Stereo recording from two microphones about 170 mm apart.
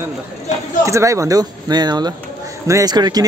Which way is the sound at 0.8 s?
20° right (ahead or behind).